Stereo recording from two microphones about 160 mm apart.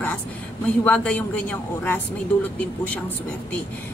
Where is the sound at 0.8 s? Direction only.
5° left (ahead or behind).